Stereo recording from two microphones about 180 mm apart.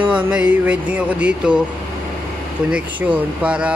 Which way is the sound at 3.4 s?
5° right (ahead or behind).